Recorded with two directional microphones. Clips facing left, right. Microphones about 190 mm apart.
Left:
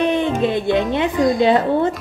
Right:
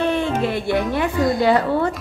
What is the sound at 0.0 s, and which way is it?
A woman's voice, 20° left (ahead or behind).